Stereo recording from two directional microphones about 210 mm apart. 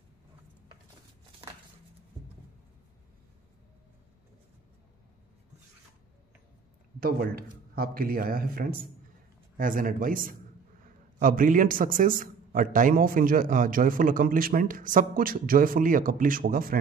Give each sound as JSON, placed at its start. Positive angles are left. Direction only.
{"t": 7.0, "sound": "a man's voice", "side_deg": -45}